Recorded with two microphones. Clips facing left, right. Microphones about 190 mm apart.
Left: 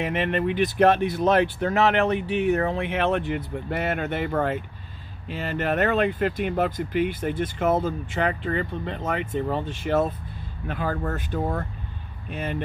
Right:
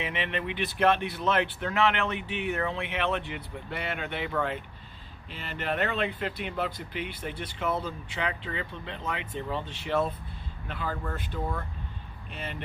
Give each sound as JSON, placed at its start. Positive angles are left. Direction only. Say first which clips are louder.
{"t": 0.0, "sound": "speech", "louder": "left 8 dB", "side_deg": 45}